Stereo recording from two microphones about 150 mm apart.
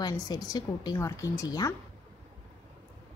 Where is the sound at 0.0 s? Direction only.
25° left (ahead or behind).